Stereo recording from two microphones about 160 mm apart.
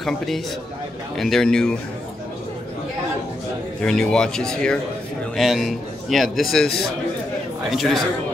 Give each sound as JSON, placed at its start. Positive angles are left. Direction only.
{"t": 1.1, "sound": "a man's voice", "side_deg": 0}
{"t": 3.8, "sound": "a man's voice", "side_deg": 5}
{"t": 7.7, "sound": "a man's voice", "side_deg": 0}